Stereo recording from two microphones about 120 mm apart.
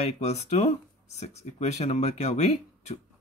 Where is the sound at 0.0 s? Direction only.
65° left (ahead or behind).